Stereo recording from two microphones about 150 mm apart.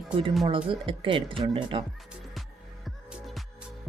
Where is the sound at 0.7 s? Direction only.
35° right (ahead or behind).